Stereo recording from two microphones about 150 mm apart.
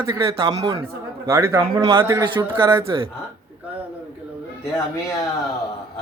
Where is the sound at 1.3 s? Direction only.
20° right (ahead or behind).